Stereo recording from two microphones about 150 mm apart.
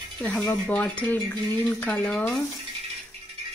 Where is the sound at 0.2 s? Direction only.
5° left (ahead or behind).